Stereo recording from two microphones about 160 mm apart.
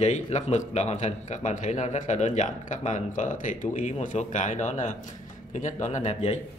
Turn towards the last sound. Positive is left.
turn(degrees=45)  # may be behind; listen again after turning